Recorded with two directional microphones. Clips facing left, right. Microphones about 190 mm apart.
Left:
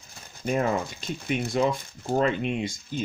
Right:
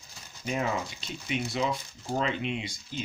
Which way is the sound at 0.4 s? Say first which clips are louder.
Left 5 dB; 50° left (ahead or behind).